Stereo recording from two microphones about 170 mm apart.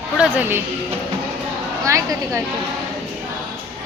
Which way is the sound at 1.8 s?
20° right (ahead or behind).